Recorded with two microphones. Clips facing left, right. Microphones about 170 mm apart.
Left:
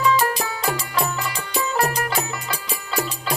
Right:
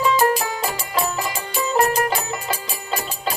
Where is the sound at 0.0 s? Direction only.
25° right (ahead or behind).